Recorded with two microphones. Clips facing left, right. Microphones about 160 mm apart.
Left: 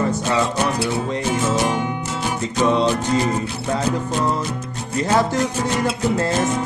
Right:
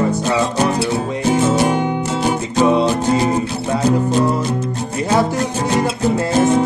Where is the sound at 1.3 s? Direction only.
30° right (ahead or behind).